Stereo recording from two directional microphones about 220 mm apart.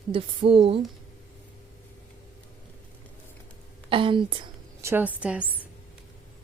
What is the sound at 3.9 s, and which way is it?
Speech, 25° right (ahead or behind).